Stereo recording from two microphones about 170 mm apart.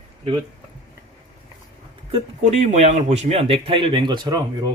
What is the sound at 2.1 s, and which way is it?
Speech, 40° right (ahead or behind).